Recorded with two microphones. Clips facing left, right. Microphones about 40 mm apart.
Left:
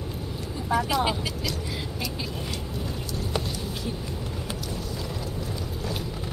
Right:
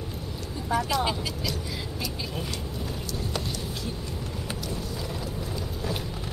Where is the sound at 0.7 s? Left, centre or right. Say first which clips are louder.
Left 2 dB; centre.